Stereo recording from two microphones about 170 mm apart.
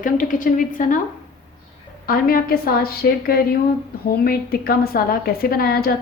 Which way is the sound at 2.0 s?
60° left (ahead or behind).